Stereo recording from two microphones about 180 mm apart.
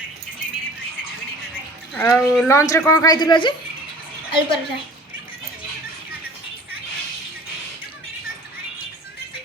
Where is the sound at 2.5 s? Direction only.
15° left (ahead or behind).